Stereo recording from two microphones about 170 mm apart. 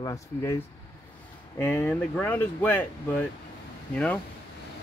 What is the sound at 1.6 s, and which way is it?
Speech, 10° left (ahead or behind).